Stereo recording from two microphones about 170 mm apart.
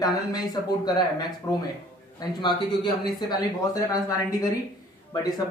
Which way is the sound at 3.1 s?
20° left (ahead or behind).